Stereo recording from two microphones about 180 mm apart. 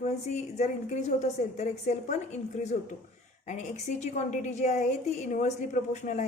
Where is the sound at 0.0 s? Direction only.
40° left (ahead or behind).